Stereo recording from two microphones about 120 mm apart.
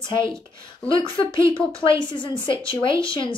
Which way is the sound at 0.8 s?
45° left (ahead or behind).